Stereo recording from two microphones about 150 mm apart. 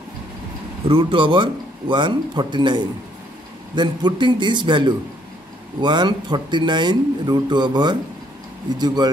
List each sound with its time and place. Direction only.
0.8 s a man's voice: 35° right (ahead or behind)